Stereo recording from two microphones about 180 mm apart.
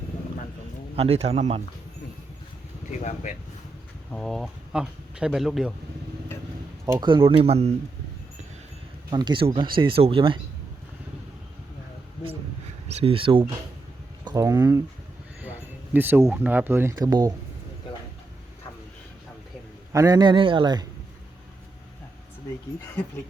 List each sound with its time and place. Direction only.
0.9 s a man's voice: 35° right (ahead or behind)
3.0 s speech: 40° left (ahead or behind)
4.1 s speech: 5° left (ahead or behind)
6.8 s speech: 20° right (ahead or behind)
9.0 s speech: 25° right (ahead or behind)
12.9 s a man's voice: 35° right (ahead or behind)
14.3 s speech: 15° right (ahead or behind)
19.9 s speech: 20° right (ahead or behind)